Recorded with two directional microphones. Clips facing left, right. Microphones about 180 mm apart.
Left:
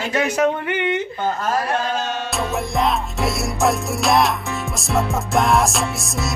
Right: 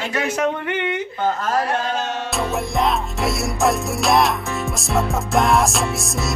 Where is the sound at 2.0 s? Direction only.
25° right (ahead or behind).